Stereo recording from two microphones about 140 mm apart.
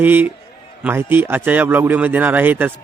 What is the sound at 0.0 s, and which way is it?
A man's voice, 15° right (ahead or behind).